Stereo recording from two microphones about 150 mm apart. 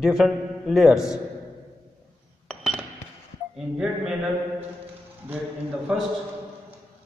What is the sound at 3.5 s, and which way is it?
Speech, centre (ahead or behind).